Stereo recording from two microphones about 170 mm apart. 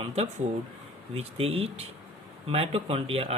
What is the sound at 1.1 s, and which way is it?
Speech, 35° right (ahead or behind).